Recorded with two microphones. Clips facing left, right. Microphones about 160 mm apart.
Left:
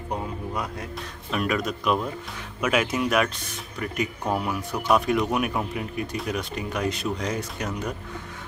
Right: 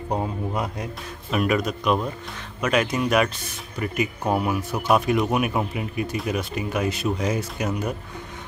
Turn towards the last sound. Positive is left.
turn(degrees=-10)  # may be behind; listen again after turning